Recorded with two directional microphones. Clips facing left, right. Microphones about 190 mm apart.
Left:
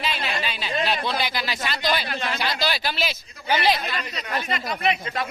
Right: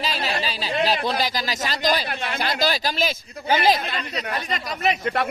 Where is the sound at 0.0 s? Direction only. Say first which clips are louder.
Right 2 dB; 35° right (ahead or behind).